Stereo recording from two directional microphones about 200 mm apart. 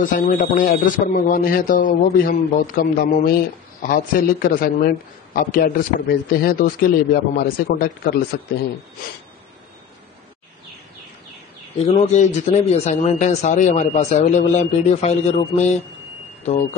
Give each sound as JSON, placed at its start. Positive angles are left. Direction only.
{"t": 0.0, "sound": "a man's voice", "side_deg": 40}
{"t": 11.8, "sound": "a man's voice", "side_deg": 35}